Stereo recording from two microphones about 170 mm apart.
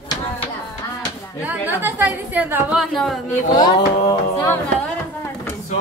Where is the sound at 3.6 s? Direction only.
20° left (ahead or behind).